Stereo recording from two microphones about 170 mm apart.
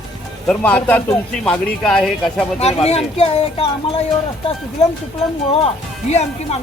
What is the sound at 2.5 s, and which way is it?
Speech, 35° left (ahead or behind).